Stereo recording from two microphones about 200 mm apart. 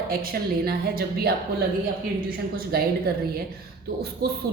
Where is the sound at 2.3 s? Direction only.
50° right (ahead or behind).